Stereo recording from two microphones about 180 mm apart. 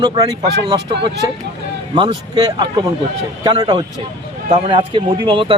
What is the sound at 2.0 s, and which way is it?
Speech, 25° right (ahead or behind).